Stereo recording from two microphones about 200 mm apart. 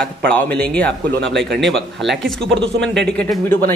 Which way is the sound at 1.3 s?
55° right (ahead or behind).